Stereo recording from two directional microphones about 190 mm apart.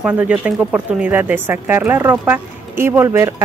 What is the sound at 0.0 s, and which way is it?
Speech, 5° right (ahead or behind).